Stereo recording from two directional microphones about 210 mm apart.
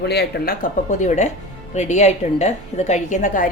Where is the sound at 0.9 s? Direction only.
35° left (ahead or behind).